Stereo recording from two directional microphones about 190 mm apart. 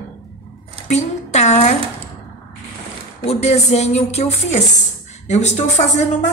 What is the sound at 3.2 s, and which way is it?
A woman's voice, 35° left (ahead or behind).